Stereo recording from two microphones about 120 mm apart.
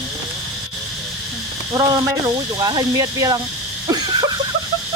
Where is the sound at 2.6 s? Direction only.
35° right (ahead or behind).